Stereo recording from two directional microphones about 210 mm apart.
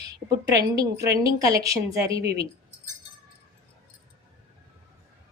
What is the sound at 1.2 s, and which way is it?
A woman's voice, 15° right (ahead or behind).